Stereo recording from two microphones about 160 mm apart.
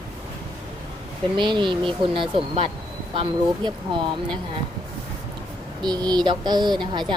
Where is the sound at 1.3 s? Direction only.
30° right (ahead or behind).